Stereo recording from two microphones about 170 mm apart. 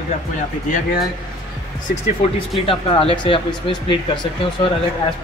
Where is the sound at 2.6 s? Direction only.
30° left (ahead or behind).